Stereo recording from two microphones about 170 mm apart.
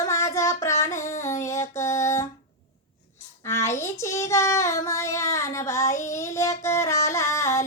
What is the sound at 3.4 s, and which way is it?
Music, 15° left (ahead or behind).